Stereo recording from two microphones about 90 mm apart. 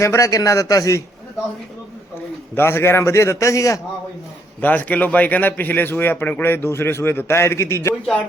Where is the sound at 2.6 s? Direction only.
25° left (ahead or behind).